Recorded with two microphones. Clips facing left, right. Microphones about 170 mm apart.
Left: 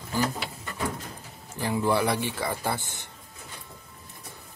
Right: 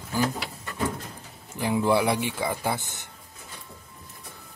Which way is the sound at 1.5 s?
15° right (ahead or behind).